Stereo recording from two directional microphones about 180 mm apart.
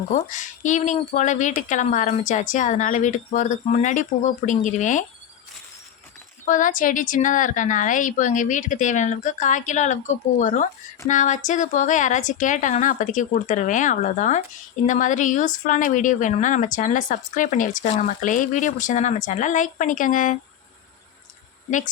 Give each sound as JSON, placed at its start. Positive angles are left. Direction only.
{"t": 0.1, "sound": "speech", "side_deg": 45}
{"t": 6.4, "sound": "speech", "side_deg": 45}